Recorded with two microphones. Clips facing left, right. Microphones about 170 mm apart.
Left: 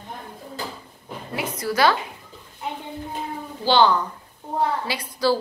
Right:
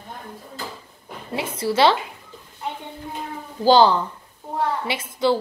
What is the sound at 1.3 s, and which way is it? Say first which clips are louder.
Speech: right 3 dB; 30° right (ahead or behind).